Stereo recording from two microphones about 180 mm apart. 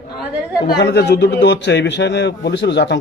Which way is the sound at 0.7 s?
70° left (ahead or behind).